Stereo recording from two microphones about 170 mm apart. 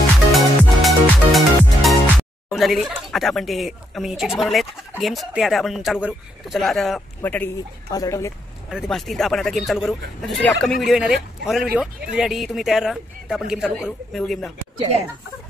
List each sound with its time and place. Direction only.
0.3 s music: centre (ahead or behind)
7.2 s a woman's voice: 10° left (ahead or behind)
8.6 s speech: centre (ahead or behind)